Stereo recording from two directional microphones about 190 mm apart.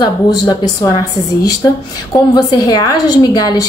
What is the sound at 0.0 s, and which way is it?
Speech, 20° left (ahead or behind).